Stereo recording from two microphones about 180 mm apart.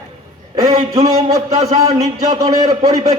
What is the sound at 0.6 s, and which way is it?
A man's voice, 20° right (ahead or behind).